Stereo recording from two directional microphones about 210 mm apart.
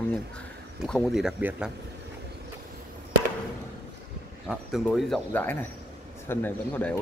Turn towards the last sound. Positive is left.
turn(degrees=5)  # may be behind; listen again after turning